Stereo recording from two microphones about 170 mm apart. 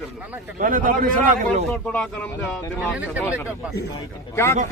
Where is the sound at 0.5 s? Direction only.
55° right (ahead or behind).